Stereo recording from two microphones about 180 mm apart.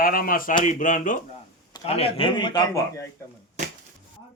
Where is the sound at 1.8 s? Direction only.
35° left (ahead or behind).